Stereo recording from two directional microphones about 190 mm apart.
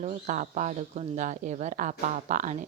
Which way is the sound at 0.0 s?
40° right (ahead or behind).